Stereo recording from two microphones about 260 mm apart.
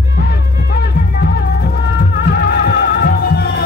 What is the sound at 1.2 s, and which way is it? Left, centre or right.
Music, left.